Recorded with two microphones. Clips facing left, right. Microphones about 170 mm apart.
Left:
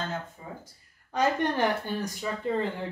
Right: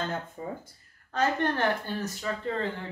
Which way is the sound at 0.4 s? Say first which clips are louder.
Right 6 dB; 50° right (ahead or behind).